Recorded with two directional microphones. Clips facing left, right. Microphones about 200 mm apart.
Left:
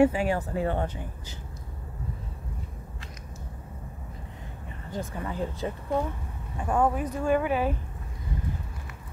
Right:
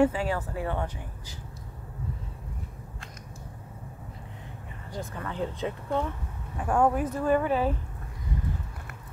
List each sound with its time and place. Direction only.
0.0 s speech: 15° left (ahead or behind)
0.6 s speech: 25° left (ahead or behind)
4.9 s speech: 15° left (ahead or behind)
5.3 s speech: 5° left (ahead or behind)